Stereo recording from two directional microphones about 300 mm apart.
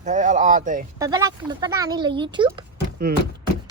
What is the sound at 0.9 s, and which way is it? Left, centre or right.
Speech, centre.